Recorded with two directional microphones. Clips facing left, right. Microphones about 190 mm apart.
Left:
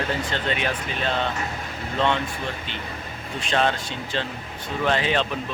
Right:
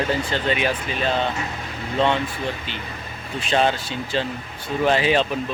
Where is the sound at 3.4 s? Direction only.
5° right (ahead or behind).